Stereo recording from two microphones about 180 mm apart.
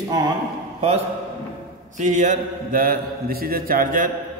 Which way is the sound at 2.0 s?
40° right (ahead or behind).